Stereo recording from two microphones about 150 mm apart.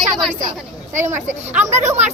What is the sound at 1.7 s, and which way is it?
Speech, 50° right (ahead or behind).